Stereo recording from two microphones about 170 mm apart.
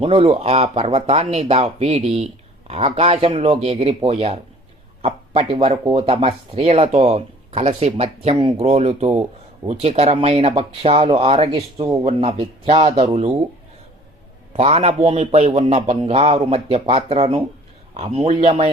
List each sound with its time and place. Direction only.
0.0 s speech: 35° right (ahead or behind)
14.5 s speech: 35° right (ahead or behind)